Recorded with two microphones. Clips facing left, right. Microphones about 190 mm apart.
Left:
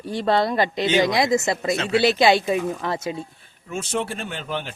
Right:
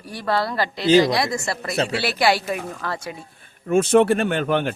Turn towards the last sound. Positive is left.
turn(degrees=-60)  # may be behind; listen again after turning